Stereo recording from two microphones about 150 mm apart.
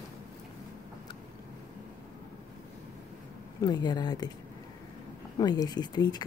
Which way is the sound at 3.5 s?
25° left (ahead or behind).